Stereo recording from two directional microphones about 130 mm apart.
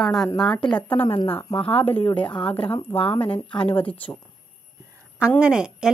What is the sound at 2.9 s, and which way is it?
Speech, 45° left (ahead or behind).